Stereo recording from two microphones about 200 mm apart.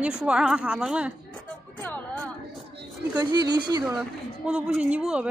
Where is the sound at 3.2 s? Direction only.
20° right (ahead or behind).